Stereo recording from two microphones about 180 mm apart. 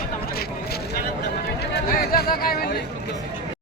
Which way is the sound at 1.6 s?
60° left (ahead or behind).